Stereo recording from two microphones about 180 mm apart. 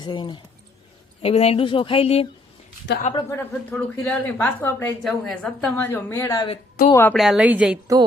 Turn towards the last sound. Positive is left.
turn(degrees=-5)  # may be behind; listen again after turning